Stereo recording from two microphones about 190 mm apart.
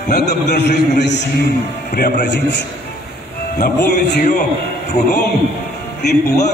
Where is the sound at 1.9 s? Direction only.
50° left (ahead or behind).